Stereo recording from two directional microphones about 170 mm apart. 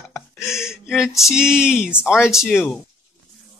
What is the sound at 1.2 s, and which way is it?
Speech, 5° right (ahead or behind).